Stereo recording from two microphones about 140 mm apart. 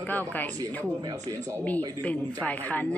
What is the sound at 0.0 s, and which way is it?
Speech, 15° left (ahead or behind).